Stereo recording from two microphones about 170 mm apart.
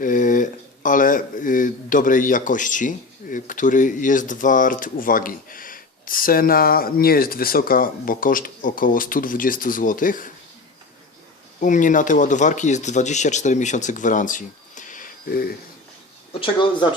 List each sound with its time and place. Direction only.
0.0 s speech: 50° left (ahead or behind)
11.6 s speech: 50° left (ahead or behind)
16.4 s speech: 30° left (ahead or behind)